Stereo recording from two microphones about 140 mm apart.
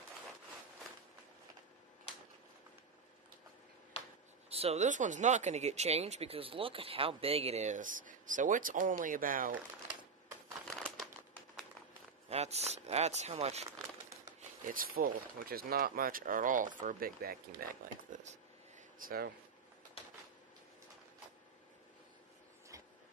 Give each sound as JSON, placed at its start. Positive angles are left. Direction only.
{"t": 4.5, "sound": "speech", "side_deg": -45}
{"t": 10.7, "sound": "crumpling", "side_deg": 5}
{"t": 12.3, "sound": "speech", "side_deg": -50}
{"t": 14.7, "sound": "speech", "side_deg": -90}
{"t": 18.1, "sound": "a sound", "side_deg": -60}